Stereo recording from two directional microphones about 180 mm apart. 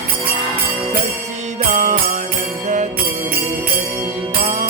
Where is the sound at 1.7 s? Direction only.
40° right (ahead or behind).